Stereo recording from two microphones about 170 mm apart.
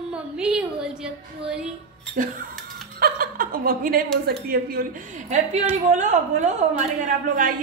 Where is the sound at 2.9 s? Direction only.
55° right (ahead or behind).